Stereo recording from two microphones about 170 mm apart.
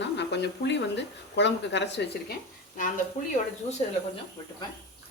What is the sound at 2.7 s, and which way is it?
Speech, 50° left (ahead or behind).